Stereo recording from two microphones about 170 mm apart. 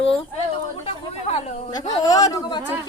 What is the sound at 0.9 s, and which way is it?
Speech, 40° left (ahead or behind).